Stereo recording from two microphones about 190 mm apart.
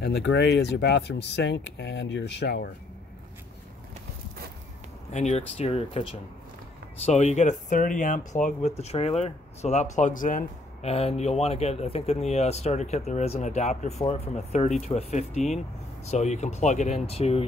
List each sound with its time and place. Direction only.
0.0 s speech: 65° left (ahead or behind)
5.1 s speech: 35° left (ahead or behind)
7.1 s speech: 35° left (ahead or behind)